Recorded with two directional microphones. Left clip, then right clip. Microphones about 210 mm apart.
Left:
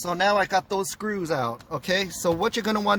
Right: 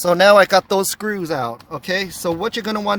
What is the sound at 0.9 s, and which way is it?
Speech, 25° right (ahead or behind).